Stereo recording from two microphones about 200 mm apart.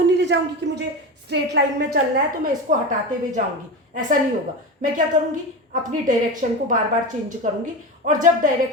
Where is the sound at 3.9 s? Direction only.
40° right (ahead or behind).